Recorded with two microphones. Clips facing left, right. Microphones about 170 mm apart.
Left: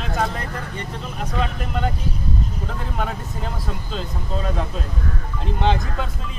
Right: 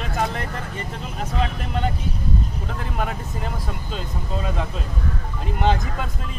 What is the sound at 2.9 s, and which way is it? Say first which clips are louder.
Speech: even; 5° right (ahead or behind).